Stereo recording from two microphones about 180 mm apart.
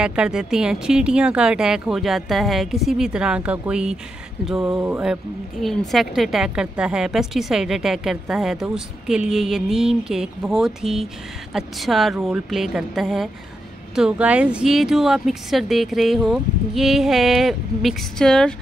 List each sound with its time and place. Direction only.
0.0 s a woman's voice: 5° right (ahead or behind)